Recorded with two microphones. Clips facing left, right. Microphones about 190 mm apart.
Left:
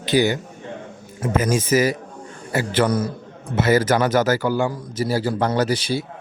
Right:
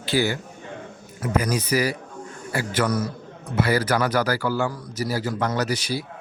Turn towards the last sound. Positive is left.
turn(degrees=30)  # may be behind; listen again after turning